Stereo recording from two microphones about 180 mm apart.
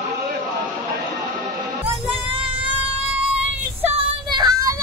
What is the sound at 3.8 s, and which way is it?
Child singing, 30° right (ahead or behind).